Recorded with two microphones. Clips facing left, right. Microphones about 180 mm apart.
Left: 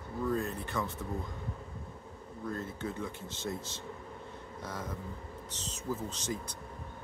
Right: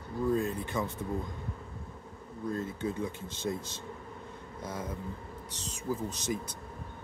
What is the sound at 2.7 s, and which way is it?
Speech, 15° right (ahead or behind).